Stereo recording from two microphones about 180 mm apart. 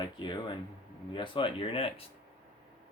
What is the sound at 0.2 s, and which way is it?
Speech, 25° left (ahead or behind).